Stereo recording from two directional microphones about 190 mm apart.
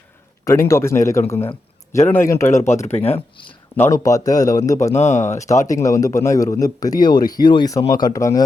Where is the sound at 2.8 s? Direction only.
35° left (ahead or behind).